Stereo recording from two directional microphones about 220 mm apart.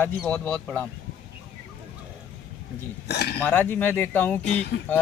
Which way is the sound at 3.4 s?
10° left (ahead or behind).